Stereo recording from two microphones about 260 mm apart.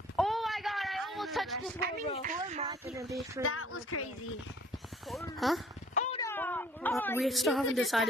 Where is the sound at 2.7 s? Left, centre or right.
Centre.